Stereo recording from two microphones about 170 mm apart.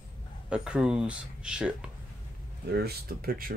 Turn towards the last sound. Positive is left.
turn(degrees=-60)  # may be behind; listen again after turning